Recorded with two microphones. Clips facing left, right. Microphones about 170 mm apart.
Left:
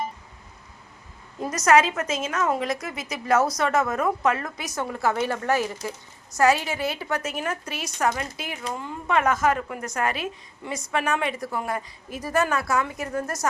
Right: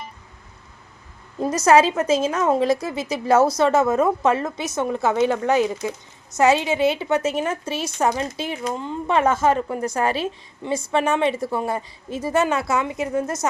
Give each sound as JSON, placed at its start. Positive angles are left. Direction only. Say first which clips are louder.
{"t": 1.4, "sound": "a woman's voice", "louder": "right 4 dB", "side_deg": -30}